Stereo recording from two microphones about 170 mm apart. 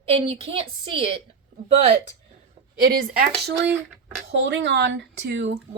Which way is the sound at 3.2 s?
75° right (ahead or behind).